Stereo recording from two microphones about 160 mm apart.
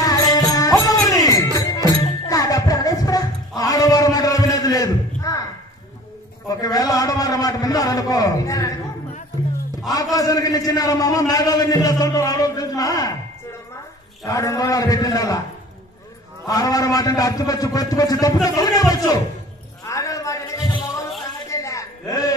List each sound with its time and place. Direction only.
0.0 s music: 25° left (ahead or behind)
6.6 s a man's voice: 25° left (ahead or behind)
10.1 s a man's voice: 20° left (ahead or behind)
14.2 s a man's voice: 20° left (ahead or behind)
16.4 s a man's voice: 25° left (ahead or behind)
19.8 s a sound: 20° left (ahead or behind)